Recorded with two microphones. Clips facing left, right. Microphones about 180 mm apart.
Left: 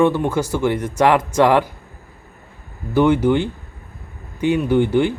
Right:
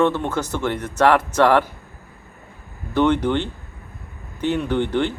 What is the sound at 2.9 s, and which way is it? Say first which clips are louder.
A man's voice: left 3 dB; 5° left (ahead or behind).